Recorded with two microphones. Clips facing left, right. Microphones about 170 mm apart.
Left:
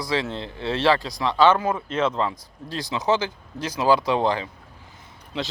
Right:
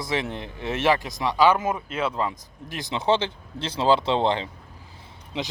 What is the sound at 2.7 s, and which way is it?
Speech, 20° right (ahead or behind).